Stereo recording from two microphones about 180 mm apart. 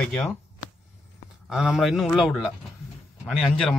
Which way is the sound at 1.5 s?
Centre (ahead or behind).